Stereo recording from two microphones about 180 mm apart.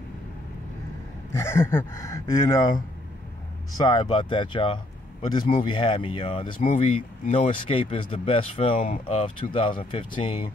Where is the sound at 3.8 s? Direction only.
25° left (ahead or behind).